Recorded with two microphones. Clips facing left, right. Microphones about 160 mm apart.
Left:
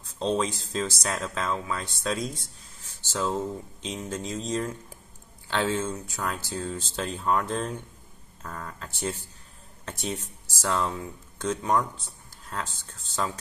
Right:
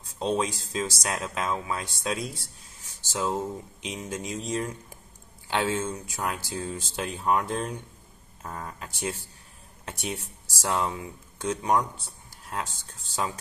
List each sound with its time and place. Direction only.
0.2 s speech: 10° right (ahead or behind)
8.4 s speech: 20° right (ahead or behind)